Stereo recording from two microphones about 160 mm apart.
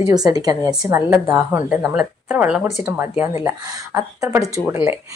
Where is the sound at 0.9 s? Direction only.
15° right (ahead or behind).